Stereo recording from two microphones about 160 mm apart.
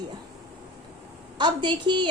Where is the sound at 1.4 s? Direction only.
30° right (ahead or behind).